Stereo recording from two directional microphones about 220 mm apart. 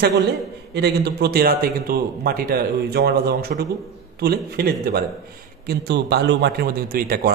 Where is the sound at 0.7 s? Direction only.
45° right (ahead or behind).